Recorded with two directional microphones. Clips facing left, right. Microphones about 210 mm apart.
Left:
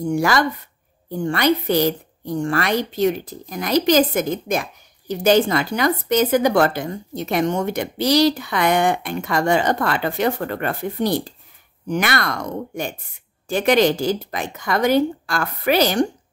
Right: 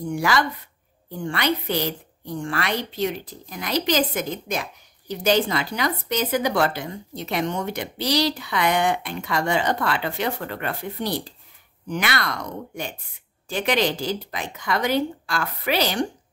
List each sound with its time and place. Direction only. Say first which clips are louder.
0.0 s a woman's voice: left 4 dB; 45° left (ahead or behind)